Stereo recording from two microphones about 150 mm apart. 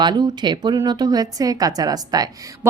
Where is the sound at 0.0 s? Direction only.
30° right (ahead or behind).